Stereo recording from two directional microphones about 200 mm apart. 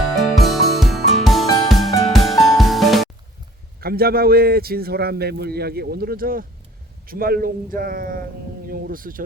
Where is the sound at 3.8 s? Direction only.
50° right (ahead or behind).